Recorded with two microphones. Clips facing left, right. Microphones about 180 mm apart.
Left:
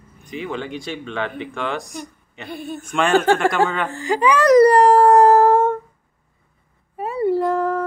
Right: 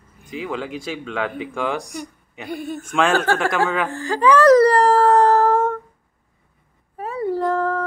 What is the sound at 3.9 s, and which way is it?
Whimper, 15° left (ahead or behind).